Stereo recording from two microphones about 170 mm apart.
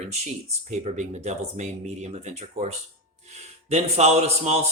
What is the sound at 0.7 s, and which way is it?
A man's voice, 40° right (ahead or behind).